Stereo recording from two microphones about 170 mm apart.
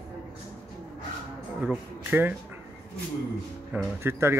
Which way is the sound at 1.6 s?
5° right (ahead or behind).